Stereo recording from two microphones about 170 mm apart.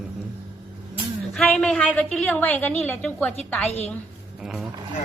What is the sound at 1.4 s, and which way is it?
A woman's voice, 5° left (ahead or behind).